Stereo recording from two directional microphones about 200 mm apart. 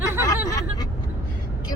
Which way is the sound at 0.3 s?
15° left (ahead or behind).